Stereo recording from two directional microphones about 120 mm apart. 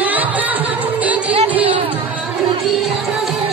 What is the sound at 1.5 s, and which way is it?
Chatter, 10° right (ahead or behind).